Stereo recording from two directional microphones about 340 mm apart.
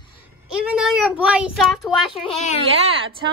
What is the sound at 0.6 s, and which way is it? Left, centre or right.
A child's voice, centre.